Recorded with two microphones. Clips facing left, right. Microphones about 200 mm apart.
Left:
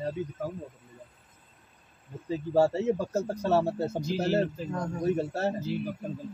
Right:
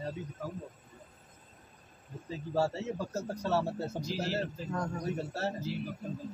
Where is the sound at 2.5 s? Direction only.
55° left (ahead or behind).